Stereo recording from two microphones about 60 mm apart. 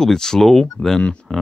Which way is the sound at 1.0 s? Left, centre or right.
Centre.